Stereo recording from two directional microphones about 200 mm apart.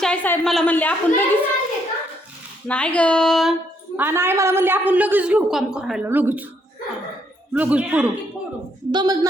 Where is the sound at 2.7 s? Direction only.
5° left (ahead or behind).